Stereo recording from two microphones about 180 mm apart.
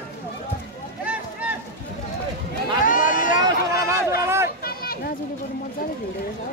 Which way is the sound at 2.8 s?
45° left (ahead or behind).